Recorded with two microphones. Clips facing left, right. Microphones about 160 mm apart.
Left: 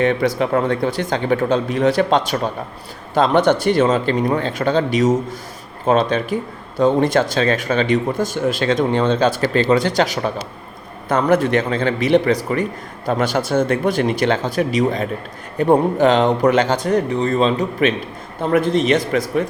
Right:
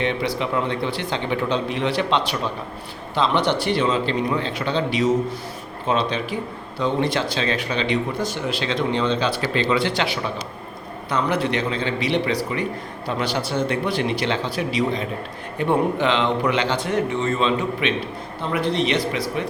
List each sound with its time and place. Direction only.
0.0 s speech: 45° left (ahead or behind)